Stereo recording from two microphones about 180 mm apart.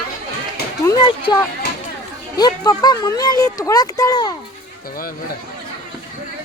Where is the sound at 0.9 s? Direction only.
25° left (ahead or behind).